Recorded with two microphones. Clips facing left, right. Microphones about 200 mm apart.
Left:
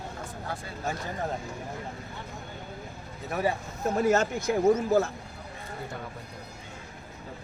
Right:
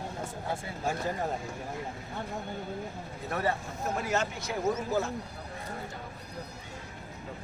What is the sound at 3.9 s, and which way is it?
Speech, 45° left (ahead or behind).